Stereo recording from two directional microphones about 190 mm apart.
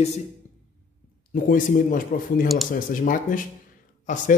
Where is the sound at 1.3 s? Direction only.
45° left (ahead or behind).